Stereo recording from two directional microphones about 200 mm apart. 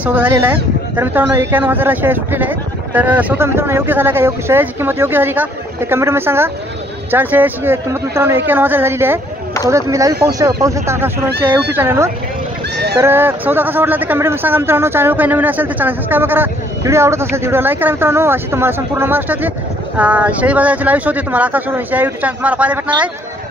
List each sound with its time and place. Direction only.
0.0 s speech: 10° right (ahead or behind)